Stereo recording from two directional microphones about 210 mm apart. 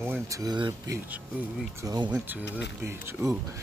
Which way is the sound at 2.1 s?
10° right (ahead or behind).